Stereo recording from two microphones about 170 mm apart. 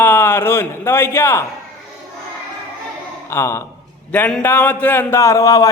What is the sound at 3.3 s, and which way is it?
A man's voice, 15° left (ahead or behind).